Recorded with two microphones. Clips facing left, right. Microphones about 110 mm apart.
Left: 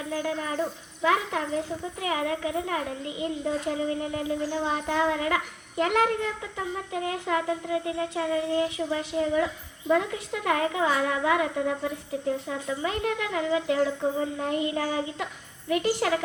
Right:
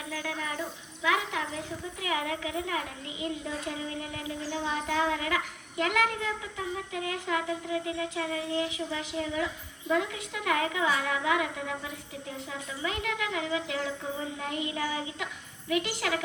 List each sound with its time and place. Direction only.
0.1 s child singing: 35° left (ahead or behind)